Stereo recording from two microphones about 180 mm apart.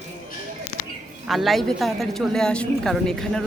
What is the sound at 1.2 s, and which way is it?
A man's voice, centre (ahead or behind).